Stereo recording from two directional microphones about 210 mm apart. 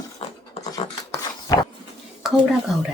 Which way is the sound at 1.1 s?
20° left (ahead or behind).